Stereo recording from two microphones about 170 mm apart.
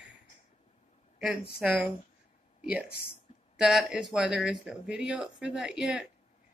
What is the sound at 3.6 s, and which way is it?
Speech, 5° right (ahead or behind).